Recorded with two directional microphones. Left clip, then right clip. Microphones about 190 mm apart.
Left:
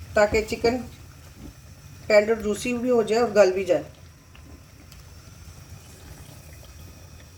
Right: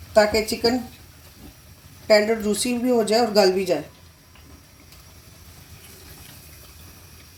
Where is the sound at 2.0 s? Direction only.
40° right (ahead or behind).